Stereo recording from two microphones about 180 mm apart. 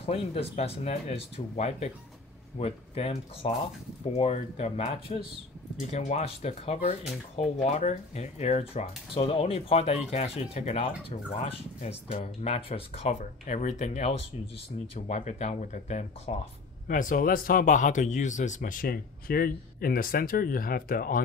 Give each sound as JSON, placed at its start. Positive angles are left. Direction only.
{"t": 0.0, "sound": "speech", "side_deg": 30}